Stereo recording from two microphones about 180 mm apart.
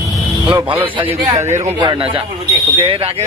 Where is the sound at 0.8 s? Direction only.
30° right (ahead or behind).